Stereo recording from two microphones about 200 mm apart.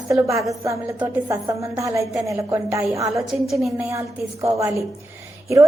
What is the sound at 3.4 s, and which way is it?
Speech, centre (ahead or behind).